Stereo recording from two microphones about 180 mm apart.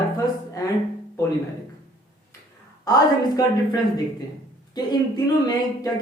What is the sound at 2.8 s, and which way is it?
Speech, 20° left (ahead or behind).